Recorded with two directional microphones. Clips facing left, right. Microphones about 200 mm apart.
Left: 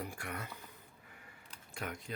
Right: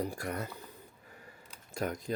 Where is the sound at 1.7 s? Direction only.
40° right (ahead or behind).